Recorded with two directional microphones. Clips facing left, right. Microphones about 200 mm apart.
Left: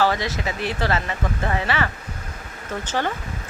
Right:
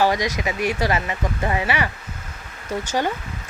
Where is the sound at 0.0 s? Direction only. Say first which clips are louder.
Right 2 dB; 15° right (ahead or behind).